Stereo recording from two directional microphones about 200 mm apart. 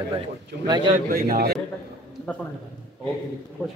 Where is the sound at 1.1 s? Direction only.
50° right (ahead or behind).